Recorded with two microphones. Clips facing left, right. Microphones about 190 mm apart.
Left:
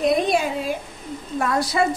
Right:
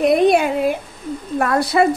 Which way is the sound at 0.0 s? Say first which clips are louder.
Right 6 dB; 60° right (ahead or behind).